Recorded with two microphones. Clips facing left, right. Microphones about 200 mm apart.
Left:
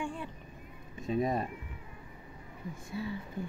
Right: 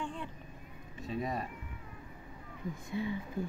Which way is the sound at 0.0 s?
10° left (ahead or behind).